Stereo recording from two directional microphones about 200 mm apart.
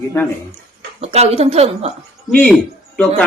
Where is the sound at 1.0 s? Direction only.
30° right (ahead or behind).